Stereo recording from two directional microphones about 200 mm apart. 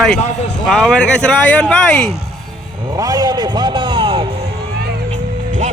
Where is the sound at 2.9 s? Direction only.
20° right (ahead or behind).